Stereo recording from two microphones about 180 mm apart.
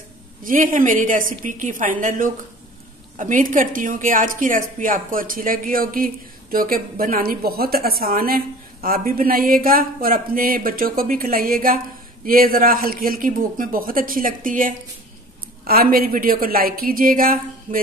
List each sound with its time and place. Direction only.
0.4 s a woman's voice: 50° right (ahead or behind)